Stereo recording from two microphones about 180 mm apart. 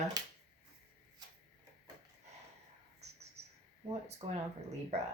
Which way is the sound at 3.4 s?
35° right (ahead or behind).